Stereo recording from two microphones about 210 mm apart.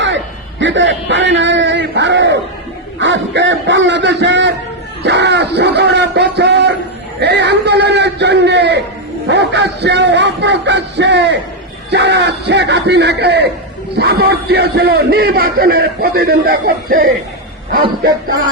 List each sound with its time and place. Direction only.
0.6 s a man's voice: 60° right (ahead or behind); by 17.1 s 45° right (ahead or behind)